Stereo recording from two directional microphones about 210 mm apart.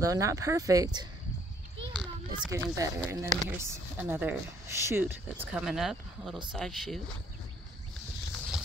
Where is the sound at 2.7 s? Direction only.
15° right (ahead or behind); by 7.0 s centre (ahead or behind).